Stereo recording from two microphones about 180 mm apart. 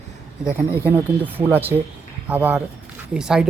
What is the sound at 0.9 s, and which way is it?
Speech, 10° right (ahead or behind).